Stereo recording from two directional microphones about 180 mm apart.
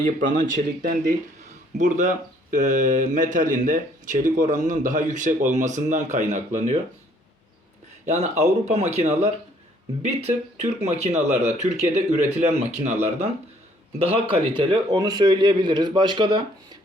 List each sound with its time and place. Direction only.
0.0 s speech: 45° right (ahead or behind)
8.0 s speech: 40° right (ahead or behind)
14.0 s a man's voice: 30° right (ahead or behind)